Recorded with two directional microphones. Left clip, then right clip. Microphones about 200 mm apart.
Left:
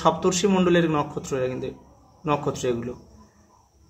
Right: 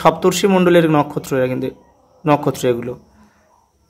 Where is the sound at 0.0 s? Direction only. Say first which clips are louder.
Right 7 dB; 50° right (ahead or behind).